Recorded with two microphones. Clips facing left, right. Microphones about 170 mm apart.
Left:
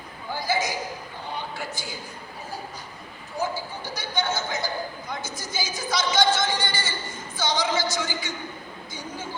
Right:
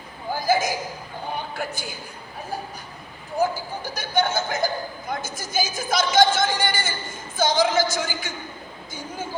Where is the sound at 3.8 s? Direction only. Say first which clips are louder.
Right 7 dB; 50° right (ahead or behind).